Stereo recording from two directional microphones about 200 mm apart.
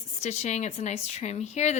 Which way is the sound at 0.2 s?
35° left (ahead or behind).